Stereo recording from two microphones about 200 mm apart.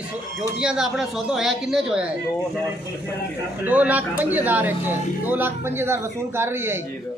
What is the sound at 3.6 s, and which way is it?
Speech, 10° right (ahead or behind).